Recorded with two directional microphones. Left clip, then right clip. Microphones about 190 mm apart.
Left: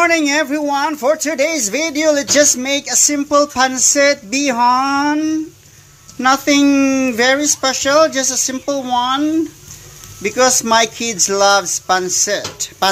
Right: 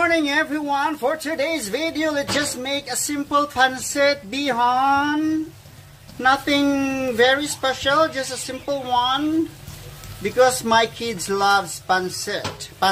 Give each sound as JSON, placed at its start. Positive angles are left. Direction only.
{"t": 0.0, "sound": "speech", "side_deg": 30}
{"t": 10.2, "sound": "speech", "side_deg": 30}